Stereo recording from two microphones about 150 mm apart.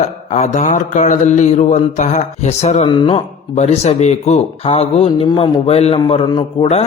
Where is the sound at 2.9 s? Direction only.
35° left (ahead or behind).